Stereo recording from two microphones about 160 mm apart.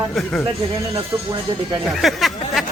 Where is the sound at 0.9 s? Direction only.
20° right (ahead or behind).